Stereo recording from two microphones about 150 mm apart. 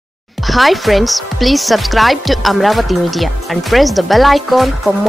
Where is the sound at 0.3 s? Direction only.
Centre (ahead or behind).